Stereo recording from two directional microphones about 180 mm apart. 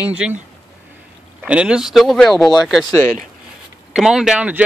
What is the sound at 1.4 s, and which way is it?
Speech, 5° right (ahead or behind).